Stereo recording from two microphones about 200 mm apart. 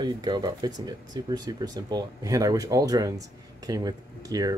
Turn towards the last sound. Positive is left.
turn(degrees=-20)  # may be behind; listen again after turning